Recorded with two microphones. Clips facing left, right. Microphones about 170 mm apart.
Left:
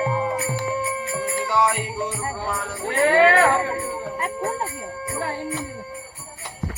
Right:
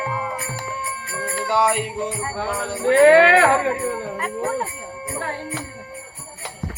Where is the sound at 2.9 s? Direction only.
90° right.